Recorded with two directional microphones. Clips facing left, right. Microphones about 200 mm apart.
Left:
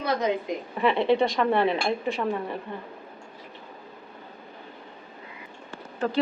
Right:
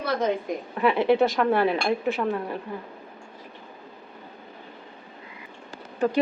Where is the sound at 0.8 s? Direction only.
Centre (ahead or behind).